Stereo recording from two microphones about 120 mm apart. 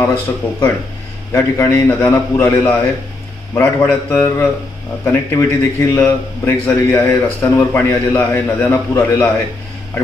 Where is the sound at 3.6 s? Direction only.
20° left (ahead or behind).